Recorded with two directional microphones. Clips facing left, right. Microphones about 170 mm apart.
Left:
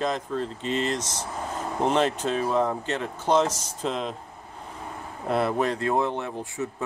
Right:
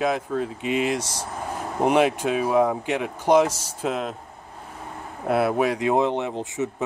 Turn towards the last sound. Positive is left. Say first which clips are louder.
# right 4 dB
turn(degrees=-20)  # may be behind; listen again after turning